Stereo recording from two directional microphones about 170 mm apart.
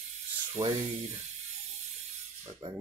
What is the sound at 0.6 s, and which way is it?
Speech, 15° right (ahead or behind).